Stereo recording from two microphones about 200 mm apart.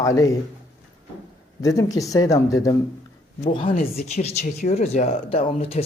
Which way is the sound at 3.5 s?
25° left (ahead or behind).